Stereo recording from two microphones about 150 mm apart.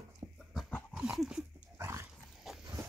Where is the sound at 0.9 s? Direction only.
5° right (ahead or behind).